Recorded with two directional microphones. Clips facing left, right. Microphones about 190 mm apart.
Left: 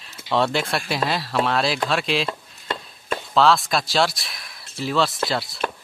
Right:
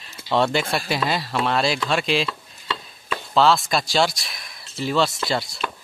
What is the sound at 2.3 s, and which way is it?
Chopping, 45° left (ahead or behind).